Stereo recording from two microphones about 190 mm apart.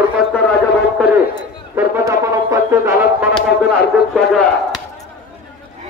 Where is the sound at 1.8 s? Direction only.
15° right (ahead or behind).